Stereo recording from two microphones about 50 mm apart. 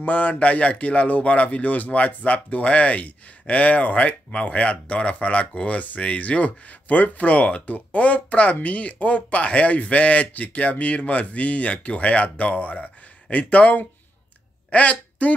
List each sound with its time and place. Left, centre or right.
0.0 s a man's voice: left